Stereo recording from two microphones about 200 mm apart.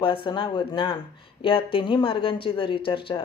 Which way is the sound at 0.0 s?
25° left (ahead or behind).